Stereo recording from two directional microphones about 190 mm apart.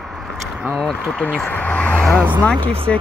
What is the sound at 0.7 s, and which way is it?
Speech, 5° left (ahead or behind).